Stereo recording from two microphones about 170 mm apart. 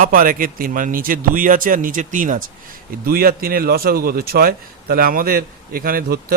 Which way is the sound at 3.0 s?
60° right (ahead or behind).